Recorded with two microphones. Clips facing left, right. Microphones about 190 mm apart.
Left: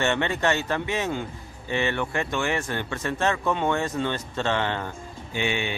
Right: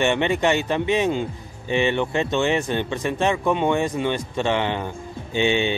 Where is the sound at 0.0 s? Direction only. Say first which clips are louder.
Right 4 dB; 15° right (ahead or behind).